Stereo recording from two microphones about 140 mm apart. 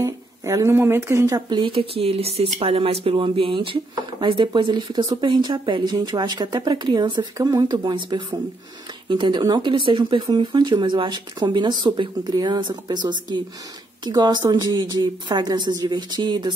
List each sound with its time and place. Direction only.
0.0 s speech: 20° right (ahead or behind)
1.6 s speech: 40° right (ahead or behind)